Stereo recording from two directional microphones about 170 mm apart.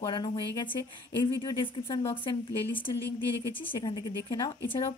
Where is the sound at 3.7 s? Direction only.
25° left (ahead or behind).